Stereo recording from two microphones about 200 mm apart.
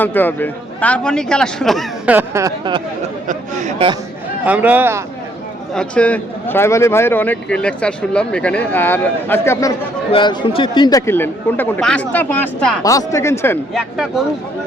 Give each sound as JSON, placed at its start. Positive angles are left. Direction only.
{"t": 0.0, "sound": "speech", "side_deg": 10}
{"t": 2.1, "sound": "speech", "side_deg": -15}
{"t": 3.2, "sound": "speech", "side_deg": -35}
{"t": 4.4, "sound": "speech", "side_deg": -10}
{"t": 5.7, "sound": "a man's voice", "side_deg": 5}
{"t": 12.8, "sound": "a man's voice", "side_deg": 15}
{"t": 13.7, "sound": "speech", "side_deg": 0}